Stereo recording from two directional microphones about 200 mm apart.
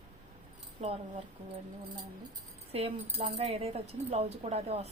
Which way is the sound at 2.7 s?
30° right (ahead or behind).